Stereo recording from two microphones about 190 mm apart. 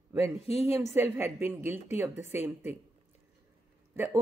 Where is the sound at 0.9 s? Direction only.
10° right (ahead or behind).